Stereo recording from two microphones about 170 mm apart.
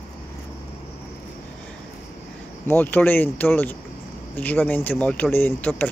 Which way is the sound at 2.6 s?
10° left (ahead or behind).